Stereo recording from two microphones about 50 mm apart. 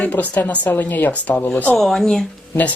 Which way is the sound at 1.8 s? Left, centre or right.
Centre.